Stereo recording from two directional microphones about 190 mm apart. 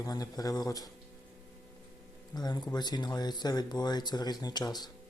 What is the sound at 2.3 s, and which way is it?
Speech, 20° left (ahead or behind).